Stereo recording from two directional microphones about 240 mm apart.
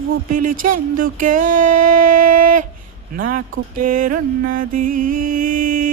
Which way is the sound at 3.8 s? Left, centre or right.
Right.